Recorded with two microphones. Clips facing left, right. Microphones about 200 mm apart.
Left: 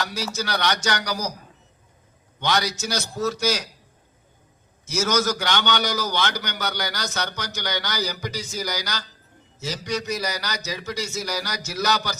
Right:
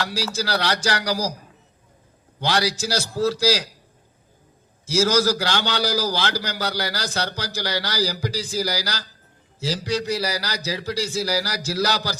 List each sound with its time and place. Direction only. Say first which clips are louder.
0.3 s a man's voice: right 1 dB; 30° right (ahead or behind)
2.4 s a man's voice: right 2 dB; 30° right (ahead or behind)
4.9 s a man's voice: right 4 dB; 30° right (ahead or behind)